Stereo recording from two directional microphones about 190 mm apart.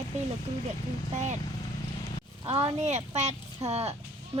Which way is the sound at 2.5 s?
30° right (ahead or behind).